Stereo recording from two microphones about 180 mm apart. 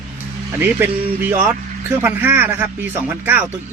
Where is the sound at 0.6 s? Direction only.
10° right (ahead or behind).